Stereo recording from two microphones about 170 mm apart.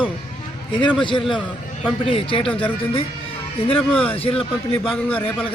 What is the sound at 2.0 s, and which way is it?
Speech, 30° left (ahead or behind).